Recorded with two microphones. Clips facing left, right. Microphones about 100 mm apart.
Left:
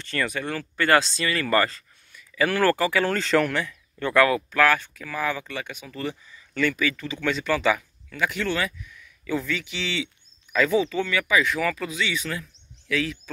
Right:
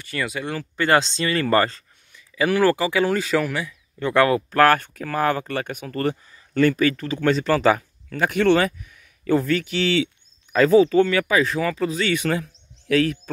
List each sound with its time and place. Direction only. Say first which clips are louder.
0.0 s speech: even; 15° right (ahead or behind); by 2.2 s 30° right (ahead or behind)
2.3 s speech: right 3 dB; 15° right (ahead or behind)
4.1 s speech: right 2 dB; 30° right (ahead or behind)
4.5 s speech: right 4 dB; 45° right (ahead or behind); by 11.9 s 30° right (ahead or behind)
11.9 s speech: right 7 dB; 50° right (ahead or behind)